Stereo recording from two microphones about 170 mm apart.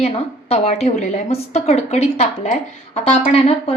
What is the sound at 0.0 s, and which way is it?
A woman's voice, 35° left (ahead or behind).